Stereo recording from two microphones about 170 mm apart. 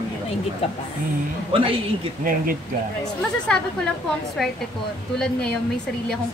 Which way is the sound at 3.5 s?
5° left (ahead or behind).